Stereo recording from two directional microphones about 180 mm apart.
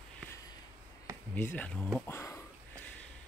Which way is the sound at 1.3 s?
10° left (ahead or behind).